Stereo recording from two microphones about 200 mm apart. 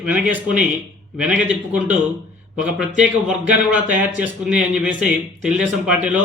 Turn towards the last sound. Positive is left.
turn(degrees=-5)  # may be behind; listen again after turning